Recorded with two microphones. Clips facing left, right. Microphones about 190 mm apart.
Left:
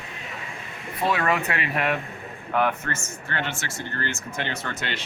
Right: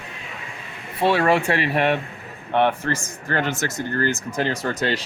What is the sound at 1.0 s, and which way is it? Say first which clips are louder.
Speech: right 6 dB; 30° right (ahead or behind).